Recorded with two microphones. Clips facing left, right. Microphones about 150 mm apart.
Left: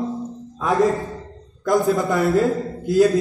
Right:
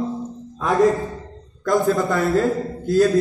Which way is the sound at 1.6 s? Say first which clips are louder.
Even; 15° left (ahead or behind).